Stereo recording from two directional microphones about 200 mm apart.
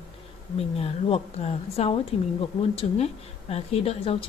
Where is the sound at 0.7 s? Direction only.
30° left (ahead or behind).